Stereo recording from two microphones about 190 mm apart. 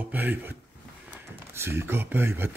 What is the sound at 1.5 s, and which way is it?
Speech, 10° right (ahead or behind).